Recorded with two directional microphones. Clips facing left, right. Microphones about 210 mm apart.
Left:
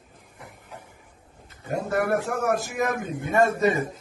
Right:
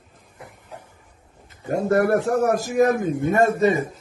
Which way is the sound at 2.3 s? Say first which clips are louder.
Right 6 dB; 35° right (ahead or behind).